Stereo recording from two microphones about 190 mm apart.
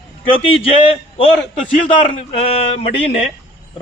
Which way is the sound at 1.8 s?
30° left (ahead or behind).